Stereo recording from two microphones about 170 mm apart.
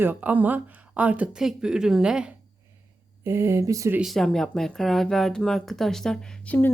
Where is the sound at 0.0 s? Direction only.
10° right (ahead or behind).